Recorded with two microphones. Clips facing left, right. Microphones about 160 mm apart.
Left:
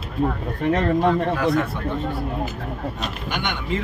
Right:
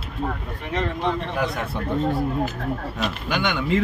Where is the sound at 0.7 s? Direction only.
50° left (ahead or behind).